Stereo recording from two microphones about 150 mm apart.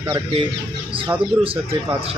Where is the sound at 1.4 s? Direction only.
35° right (ahead or behind).